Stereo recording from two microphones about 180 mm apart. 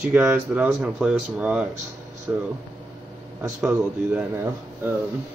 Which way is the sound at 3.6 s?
10° right (ahead or behind).